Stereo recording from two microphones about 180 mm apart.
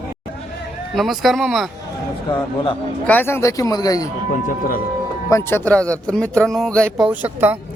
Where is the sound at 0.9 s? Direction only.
Centre (ahead or behind).